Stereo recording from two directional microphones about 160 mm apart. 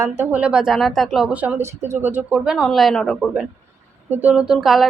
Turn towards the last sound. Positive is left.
turn(degrees=0)  # may be behind; listen again after turning